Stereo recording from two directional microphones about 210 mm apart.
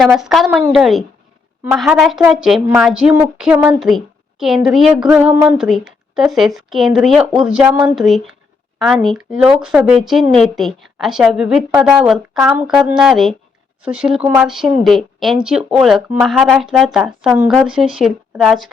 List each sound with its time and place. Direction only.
0.0 s a woman's voice: centre (ahead or behind)